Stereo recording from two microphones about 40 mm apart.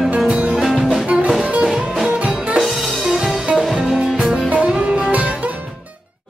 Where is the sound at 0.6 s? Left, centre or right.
Centre.